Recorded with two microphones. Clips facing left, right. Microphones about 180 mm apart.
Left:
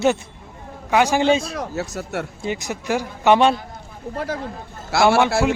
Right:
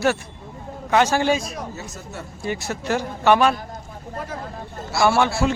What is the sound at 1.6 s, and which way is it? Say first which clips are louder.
Speech: left 6 dB; 75° left (ahead or behind).